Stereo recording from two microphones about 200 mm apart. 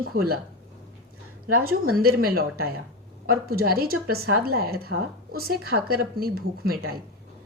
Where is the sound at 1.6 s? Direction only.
45° right (ahead or behind).